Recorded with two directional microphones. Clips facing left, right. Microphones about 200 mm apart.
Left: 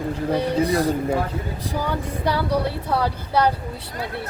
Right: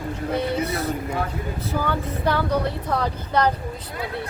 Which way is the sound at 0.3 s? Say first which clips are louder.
Left 4 dB; 15° left (ahead or behind).